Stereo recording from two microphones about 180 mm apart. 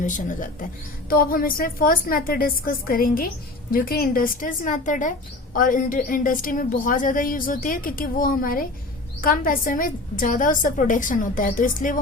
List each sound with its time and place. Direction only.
0.0 s a woman's voice: 45° left (ahead or behind)